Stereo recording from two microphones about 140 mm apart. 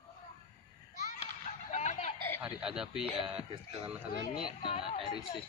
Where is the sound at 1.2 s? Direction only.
55° left (ahead or behind).